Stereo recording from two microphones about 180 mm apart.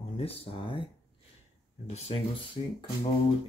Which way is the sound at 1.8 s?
35° left (ahead or behind).